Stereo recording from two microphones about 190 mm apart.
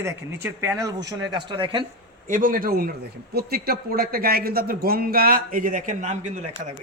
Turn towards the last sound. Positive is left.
turn(degrees=-40)  # may be behind; listen again after turning